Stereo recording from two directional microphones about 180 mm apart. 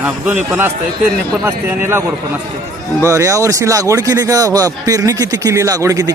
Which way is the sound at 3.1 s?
15° right (ahead or behind).